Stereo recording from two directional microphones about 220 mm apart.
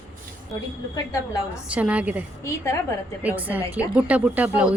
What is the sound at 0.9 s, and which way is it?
Speech, 15° left (ahead or behind).